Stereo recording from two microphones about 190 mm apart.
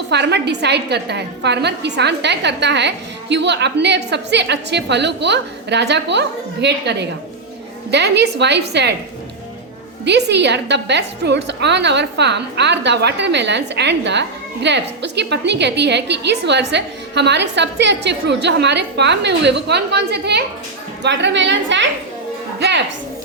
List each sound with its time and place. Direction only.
0.1 s a woman's voice: 60° right (ahead or behind)
10.0 s a woman's voice: 65° right (ahead or behind)